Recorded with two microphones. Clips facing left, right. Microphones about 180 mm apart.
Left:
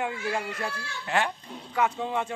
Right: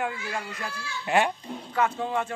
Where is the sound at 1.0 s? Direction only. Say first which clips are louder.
Right 4 dB; 15° right (ahead or behind).